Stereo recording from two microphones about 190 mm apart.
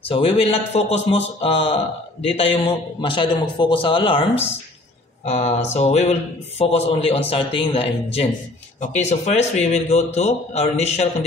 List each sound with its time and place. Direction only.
0.1 s a man's voice: 30° left (ahead or behind)